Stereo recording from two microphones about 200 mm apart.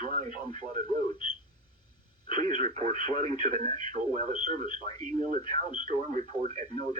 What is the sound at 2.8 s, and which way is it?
Speech, 25° left (ahead or behind).